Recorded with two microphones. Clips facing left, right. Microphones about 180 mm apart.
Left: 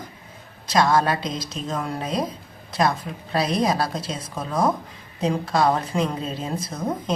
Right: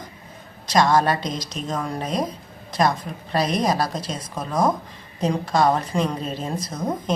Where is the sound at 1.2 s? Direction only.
25° left (ahead or behind).